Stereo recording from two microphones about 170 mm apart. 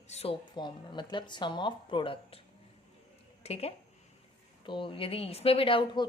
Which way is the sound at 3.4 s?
35° left (ahead or behind).